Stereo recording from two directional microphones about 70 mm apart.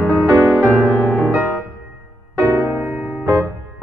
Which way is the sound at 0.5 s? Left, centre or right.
Right.